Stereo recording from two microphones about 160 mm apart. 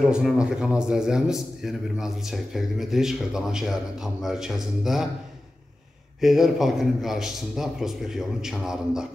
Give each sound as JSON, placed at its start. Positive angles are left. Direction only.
{"t": 0.0, "sound": "a man's voice", "side_deg": -5}
{"t": 6.2, "sound": "a man's voice", "side_deg": 0}